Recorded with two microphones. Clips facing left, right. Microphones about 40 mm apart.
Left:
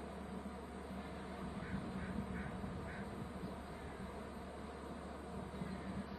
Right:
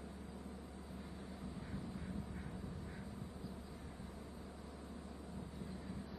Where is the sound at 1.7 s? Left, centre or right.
Left.